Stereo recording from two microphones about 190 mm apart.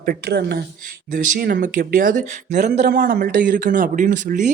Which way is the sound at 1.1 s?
50° right (ahead or behind).